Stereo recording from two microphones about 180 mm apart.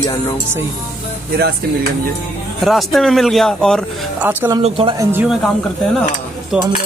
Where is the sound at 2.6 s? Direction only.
Centre (ahead or behind).